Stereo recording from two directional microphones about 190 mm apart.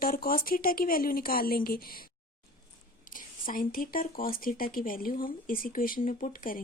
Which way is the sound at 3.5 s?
45° left (ahead or behind).